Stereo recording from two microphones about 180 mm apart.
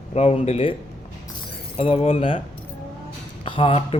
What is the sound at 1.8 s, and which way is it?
Speech, 30° left (ahead or behind).